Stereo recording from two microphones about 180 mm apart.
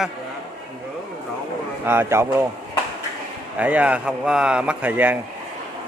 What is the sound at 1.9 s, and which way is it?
Speech, 15° right (ahead or behind).